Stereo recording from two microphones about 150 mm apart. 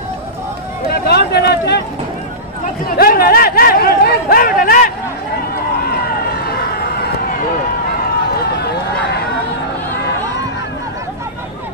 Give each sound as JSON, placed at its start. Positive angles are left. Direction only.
{"t": 0.8, "sound": "a sound", "side_deg": 90}
{"t": 3.0, "sound": "chatter", "side_deg": 80}
{"t": 6.5, "sound": "run", "side_deg": 90}